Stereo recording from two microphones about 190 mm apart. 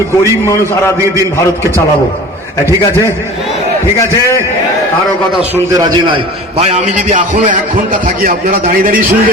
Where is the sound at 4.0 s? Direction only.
15° left (ahead or behind).